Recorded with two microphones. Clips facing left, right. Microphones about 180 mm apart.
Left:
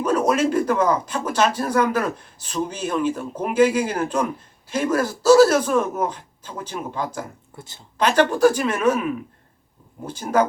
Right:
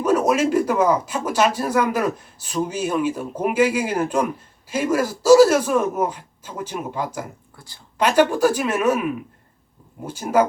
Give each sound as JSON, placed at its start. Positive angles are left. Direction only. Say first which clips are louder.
{"t": 0.0, "sound": "speech", "louder": "right 1 dB", "side_deg": -10}
{"t": 7.5, "sound": "a woman's voice", "louder": "left 6 dB", "side_deg": 20}
{"t": 7.9, "sound": "speech", "louder": "right 1 dB", "side_deg": -10}
{"t": 10.1, "sound": "speech", "louder": "right 1 dB", "side_deg": -10}